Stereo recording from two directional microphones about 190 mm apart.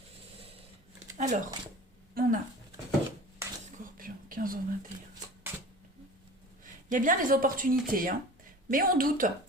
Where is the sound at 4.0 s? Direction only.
45° right (ahead or behind).